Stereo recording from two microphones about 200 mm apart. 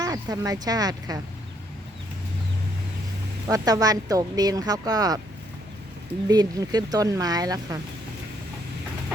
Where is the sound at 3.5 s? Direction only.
20° right (ahead or behind).